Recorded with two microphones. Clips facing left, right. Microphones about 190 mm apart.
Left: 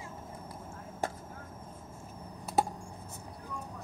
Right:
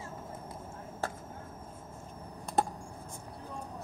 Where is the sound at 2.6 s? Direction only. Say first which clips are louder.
Left 1 dB; 5° left (ahead or behind).